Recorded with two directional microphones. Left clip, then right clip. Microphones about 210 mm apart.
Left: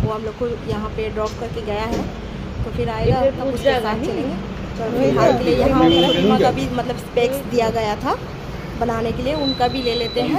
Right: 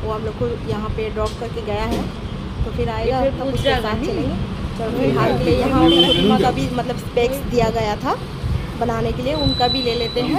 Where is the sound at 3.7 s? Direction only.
55° right (ahead or behind).